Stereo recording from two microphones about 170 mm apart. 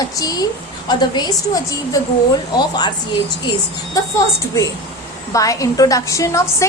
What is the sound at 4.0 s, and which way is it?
A woman's voice, 20° left (ahead or behind).